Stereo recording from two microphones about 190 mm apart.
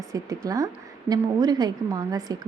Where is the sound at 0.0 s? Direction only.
15° right (ahead or behind).